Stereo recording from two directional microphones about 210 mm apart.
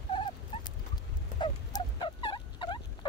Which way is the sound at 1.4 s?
20° left (ahead or behind).